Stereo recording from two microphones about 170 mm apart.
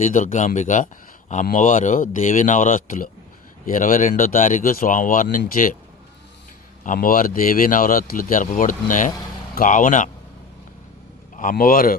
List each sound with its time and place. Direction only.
0.0 s speech: 50° left (ahead or behind)
6.8 s speech: 55° left (ahead or behind)
11.3 s a man's voice: 55° left (ahead or behind)